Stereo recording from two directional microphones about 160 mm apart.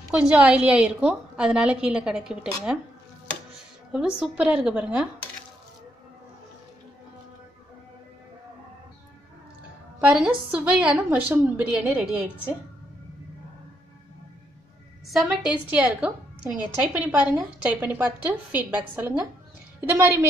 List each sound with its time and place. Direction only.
0.1 s a woman's voice: 5° right (ahead or behind)
3.9 s a woman's voice: 5° right (ahead or behind)
9.9 s a woman's voice: 5° right (ahead or behind)
15.1 s a woman's voice: 5° right (ahead or behind)